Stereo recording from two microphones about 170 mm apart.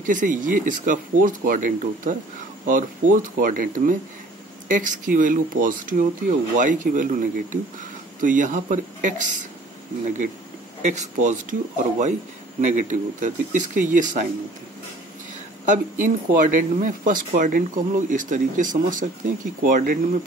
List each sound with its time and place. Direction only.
0.0 s speech: 50° right (ahead or behind)
15.6 s speech: 50° right (ahead or behind)